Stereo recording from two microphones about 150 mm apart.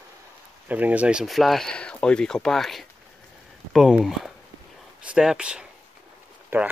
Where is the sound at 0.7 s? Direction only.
10° right (ahead or behind).